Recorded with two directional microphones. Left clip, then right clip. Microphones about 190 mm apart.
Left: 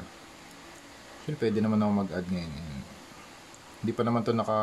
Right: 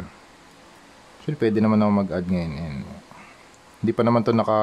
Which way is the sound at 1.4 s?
45° right (ahead or behind).